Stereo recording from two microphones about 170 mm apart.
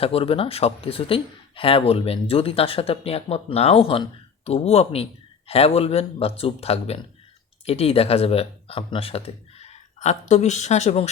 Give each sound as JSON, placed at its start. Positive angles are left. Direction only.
{"t": 0.0, "sound": "a man's voice", "side_deg": 35}